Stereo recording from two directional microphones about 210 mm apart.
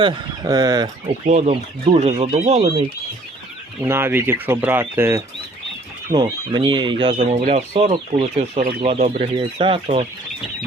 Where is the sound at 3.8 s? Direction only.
10° right (ahead or behind).